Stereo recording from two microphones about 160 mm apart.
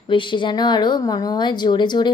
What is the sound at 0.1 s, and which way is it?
A woman's voice, 30° left (ahead or behind).